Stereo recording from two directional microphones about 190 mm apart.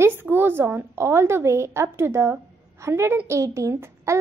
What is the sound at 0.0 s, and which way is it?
A woman's voice, 10° right (ahead or behind).